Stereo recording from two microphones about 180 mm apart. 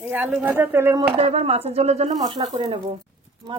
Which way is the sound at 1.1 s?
35° right (ahead or behind).